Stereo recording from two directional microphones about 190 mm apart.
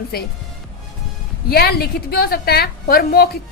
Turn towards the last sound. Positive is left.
turn(degrees=55)  # may be behind; listen again after turning